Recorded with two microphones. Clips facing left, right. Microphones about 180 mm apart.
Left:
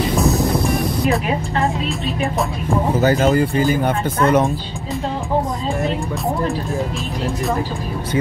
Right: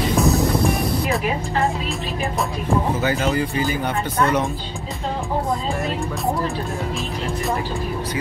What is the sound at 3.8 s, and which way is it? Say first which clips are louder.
Speech: left 4 dB; 55° left (ahead or behind).